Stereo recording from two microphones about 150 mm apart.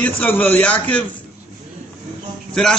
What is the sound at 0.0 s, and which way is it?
A man's voice, 10° left (ahead or behind).